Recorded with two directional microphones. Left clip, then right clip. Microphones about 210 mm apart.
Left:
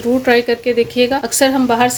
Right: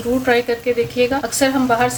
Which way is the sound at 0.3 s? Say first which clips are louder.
Left 3 dB; 35° left (ahead or behind).